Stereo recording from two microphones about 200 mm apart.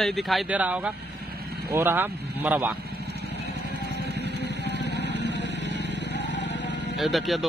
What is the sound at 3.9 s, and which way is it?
Vehicle, 55° left (ahead or behind).